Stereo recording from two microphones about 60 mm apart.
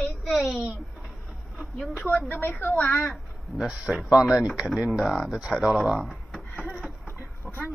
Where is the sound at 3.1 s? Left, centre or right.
Centre.